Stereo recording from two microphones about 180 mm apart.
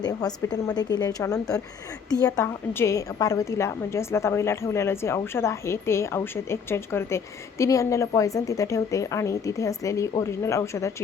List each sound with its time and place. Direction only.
0.0 s a woman's voice: 20° left (ahead or behind)